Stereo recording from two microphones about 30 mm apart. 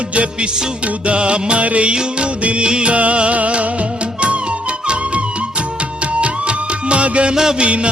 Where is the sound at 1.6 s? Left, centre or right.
Right.